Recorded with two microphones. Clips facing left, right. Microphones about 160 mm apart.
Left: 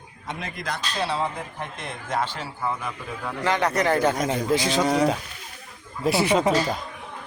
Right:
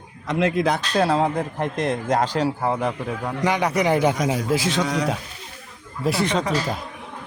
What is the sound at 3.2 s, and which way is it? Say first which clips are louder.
Speech: right 1 dB; 15° right (ahead or behind).